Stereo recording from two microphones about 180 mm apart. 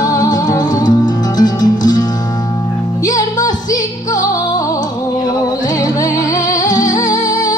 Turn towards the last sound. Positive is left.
turn(degrees=20)  # may be behind; listen again after turning